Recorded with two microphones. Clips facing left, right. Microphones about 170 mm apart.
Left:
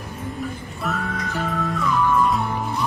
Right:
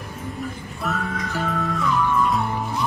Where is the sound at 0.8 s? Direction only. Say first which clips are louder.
Even; centre (ahead or behind).